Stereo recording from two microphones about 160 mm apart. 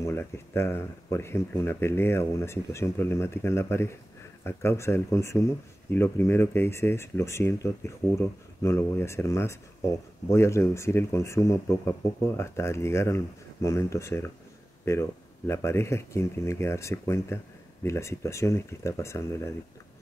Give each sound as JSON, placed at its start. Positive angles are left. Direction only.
{"t": 0.0, "sound": "speech", "side_deg": 15}